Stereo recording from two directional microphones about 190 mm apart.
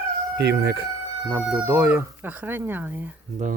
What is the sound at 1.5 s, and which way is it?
Speech, 15° right (ahead or behind).